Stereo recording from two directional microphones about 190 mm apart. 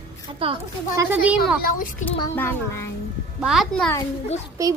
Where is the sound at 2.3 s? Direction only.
15° left (ahead or behind).